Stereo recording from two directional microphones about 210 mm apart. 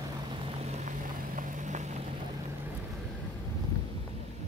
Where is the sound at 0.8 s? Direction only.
35° right (ahead or behind).